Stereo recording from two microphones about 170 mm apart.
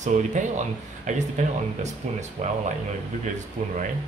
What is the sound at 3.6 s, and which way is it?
Speech, 35° right (ahead or behind).